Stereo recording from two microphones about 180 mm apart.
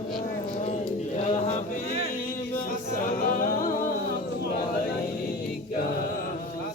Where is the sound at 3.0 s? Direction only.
50° left (ahead or behind).